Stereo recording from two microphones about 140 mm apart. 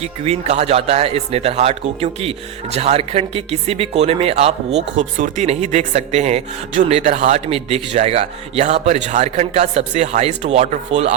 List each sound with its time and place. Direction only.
0.0 s speech: 50° right (ahead or behind)